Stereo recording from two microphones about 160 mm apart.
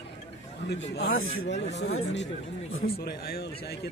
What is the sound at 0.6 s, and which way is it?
Speech, 90° left.